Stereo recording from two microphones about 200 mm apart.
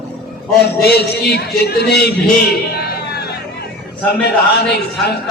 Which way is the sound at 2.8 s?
50° left (ahead or behind).